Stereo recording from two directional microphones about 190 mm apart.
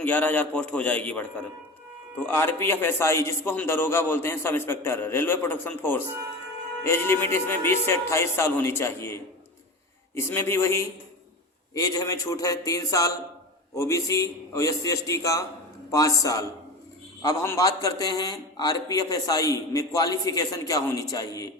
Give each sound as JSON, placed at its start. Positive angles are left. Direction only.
{"t": 0.0, "sound": "a man's voice", "side_deg": 10}